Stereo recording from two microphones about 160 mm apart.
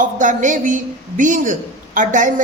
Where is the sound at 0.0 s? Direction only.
55° right (ahead or behind).